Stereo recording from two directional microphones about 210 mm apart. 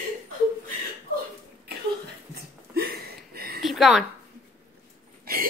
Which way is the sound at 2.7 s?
45° right (ahead or behind).